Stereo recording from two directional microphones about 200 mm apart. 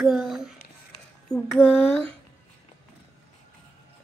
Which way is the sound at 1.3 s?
5° left (ahead or behind).